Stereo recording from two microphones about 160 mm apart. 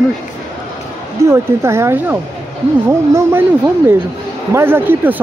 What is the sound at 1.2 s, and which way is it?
Speech, 15° right (ahead or behind).